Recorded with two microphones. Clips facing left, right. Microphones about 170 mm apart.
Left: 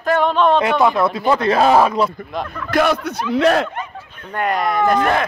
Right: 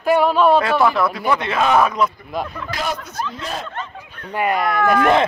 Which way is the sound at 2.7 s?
65° left (ahead or behind).